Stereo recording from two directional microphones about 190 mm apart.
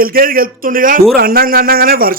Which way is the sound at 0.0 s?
50° right (ahead or behind).